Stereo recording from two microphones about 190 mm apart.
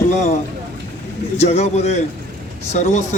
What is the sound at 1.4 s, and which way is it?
Speech, 35° left (ahead or behind).